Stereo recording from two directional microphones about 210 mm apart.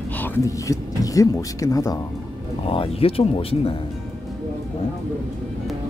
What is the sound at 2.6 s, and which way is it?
Speech, 25° left (ahead or behind).